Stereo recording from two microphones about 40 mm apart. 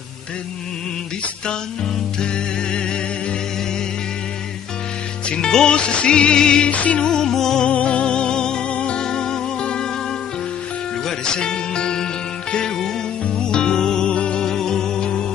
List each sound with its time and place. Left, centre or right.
2.1 s music: left
5.3 s music: centre
6.7 s music: left
7.1 s music: centre
7.6 s music: left
11.1 s music: centre
14.4 s music: centre